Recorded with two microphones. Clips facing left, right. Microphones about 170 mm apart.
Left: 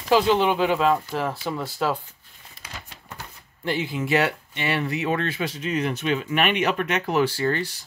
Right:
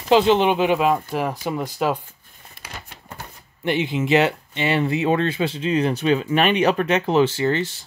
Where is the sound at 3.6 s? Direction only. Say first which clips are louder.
Right 4 dB; 20° right (ahead or behind).